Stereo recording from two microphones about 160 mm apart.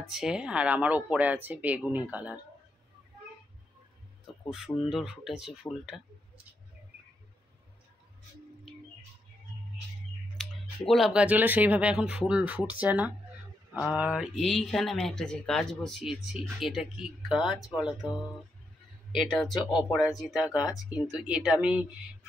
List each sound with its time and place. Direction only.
0.1 s speech: 5° right (ahead or behind)
4.5 s speech: 5° right (ahead or behind)
10.3 s speech: centre (ahead or behind)
19.5 s speech: 30° left (ahead or behind)
20.0 s speech: centre (ahead or behind)